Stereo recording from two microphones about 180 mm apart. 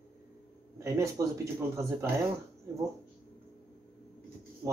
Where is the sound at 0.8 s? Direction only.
15° right (ahead or behind).